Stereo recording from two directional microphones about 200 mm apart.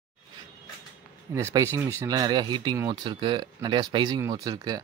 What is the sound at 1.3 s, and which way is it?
Speech, 15° right (ahead or behind).